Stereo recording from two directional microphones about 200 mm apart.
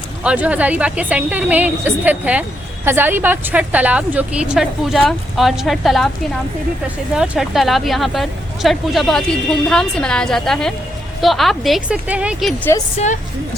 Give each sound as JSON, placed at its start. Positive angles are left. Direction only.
{"t": 0.3, "sound": "a woman's voice", "side_deg": -5}
{"t": 13.0, "sound": "a woman's voice", "side_deg": 35}